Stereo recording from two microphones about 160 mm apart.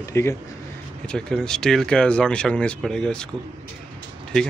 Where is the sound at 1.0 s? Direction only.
5° left (ahead or behind).